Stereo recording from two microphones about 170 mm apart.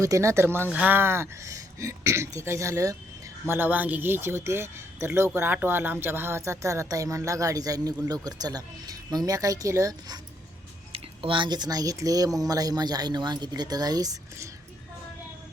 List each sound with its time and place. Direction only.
0.0 s speech: 20° right (ahead or behind)
10.9 s speech: 30° right (ahead or behind)